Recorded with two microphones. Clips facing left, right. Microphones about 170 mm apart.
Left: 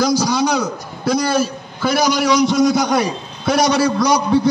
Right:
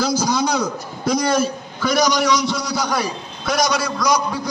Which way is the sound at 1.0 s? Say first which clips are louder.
Left 1 dB; 30° left (ahead or behind).